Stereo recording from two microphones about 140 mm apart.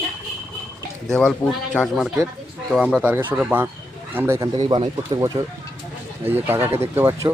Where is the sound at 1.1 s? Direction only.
5° left (ahead or behind); by 4.5 s 15° right (ahead or behind).